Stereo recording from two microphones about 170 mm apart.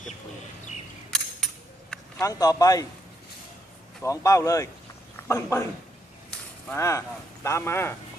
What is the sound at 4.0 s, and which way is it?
Speech, 20° left (ahead or behind).